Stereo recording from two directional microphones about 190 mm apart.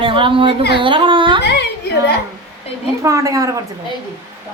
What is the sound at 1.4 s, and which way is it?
Speech, 60° left (ahead or behind).